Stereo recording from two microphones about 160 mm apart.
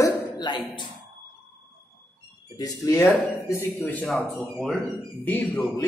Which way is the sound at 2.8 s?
15° left (ahead or behind).